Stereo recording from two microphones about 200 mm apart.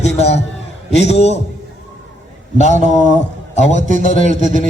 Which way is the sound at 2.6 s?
35° left (ahead or behind).